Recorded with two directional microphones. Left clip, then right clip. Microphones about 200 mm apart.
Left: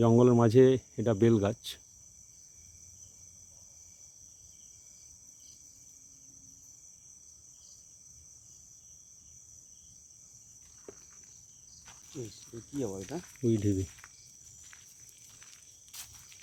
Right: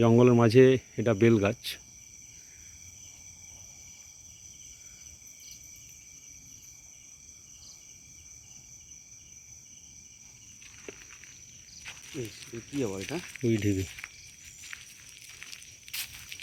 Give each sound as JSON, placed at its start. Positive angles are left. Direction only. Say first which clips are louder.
{"t": 0.0, "sound": "speech", "louder": "right 2 dB", "side_deg": 0}
{"t": 12.1, "sound": "speech", "louder": "right 3 dB", "side_deg": -35}
{"t": 13.4, "sound": "speech", "louder": "right 1 dB", "side_deg": 0}
{"t": 15.9, "sound": "snake", "louder": "right 11 dB", "side_deg": -5}